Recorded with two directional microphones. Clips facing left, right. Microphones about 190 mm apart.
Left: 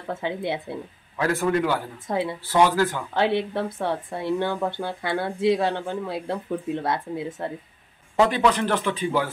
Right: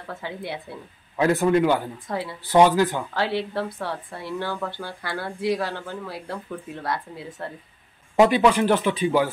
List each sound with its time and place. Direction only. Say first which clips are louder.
0.1 s speech: left 6 dB; 20° left (ahead or behind)
1.1 s speech: right 3 dB; 20° right (ahead or behind)
2.0 s speech: left 8 dB; 20° left (ahead or behind)
2.4 s speech: right 4 dB; 20° right (ahead or behind)
3.2 s speech: left 4 dB; 20° left (ahead or behind)
8.2 s speech: right 3 dB; 10° right (ahead or behind)